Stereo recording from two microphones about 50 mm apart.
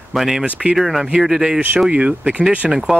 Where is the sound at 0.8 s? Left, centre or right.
Centre.